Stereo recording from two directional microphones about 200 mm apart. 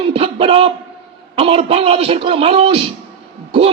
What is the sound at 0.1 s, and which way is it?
Music, 30° right (ahead or behind).